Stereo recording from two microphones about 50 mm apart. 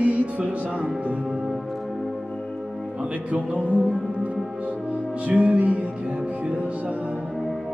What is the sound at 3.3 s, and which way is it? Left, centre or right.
Speech, right.